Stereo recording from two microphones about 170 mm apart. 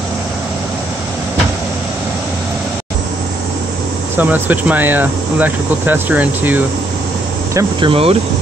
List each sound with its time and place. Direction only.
4.2 s speech: 10° right (ahead or behind)
7.8 s speech: 35° right (ahead or behind)